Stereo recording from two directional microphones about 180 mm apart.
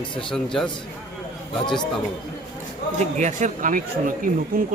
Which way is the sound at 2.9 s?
40° right (ahead or behind).